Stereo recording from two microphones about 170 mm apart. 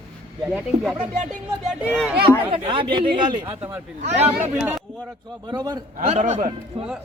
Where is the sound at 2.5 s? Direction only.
30° right (ahead or behind).